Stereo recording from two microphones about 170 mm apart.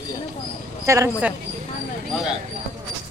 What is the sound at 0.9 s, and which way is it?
Speech, 15° right (ahead or behind).